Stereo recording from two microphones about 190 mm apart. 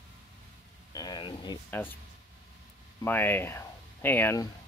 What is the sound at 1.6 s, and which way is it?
Speech, 10° left (ahead or behind).